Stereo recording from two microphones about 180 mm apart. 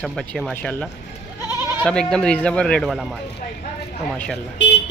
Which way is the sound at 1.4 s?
10° right (ahead or behind).